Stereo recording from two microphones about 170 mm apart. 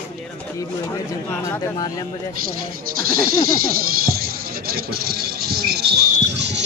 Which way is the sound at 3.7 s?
60° right (ahead or behind).